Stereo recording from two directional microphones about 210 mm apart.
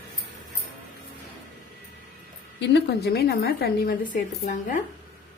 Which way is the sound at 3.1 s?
50° left (ahead or behind).